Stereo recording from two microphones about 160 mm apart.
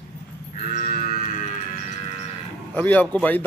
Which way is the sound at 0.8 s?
60° left (ahead or behind).